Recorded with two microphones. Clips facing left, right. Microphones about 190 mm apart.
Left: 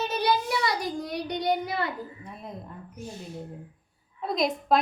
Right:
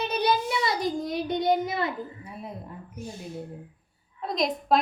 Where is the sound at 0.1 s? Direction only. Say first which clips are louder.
Right 2 dB; 20° right (ahead or behind).